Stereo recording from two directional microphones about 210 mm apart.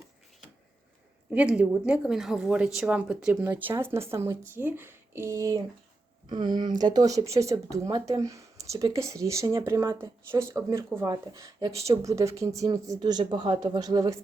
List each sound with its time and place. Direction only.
1.3 s speech: 5° right (ahead or behind)